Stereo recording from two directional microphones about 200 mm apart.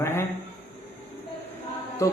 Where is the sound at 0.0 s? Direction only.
15° left (ahead or behind).